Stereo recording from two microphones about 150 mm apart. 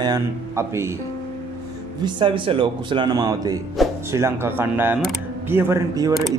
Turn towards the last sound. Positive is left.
turn(degrees=-20)  # may be behind; listen again after turning